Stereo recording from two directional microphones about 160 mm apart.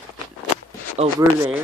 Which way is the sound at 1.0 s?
40° right (ahead or behind).